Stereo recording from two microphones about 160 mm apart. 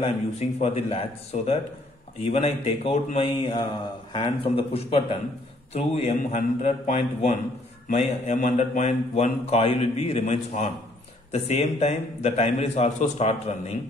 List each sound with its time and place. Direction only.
0.0 s speech: 40° left (ahead or behind)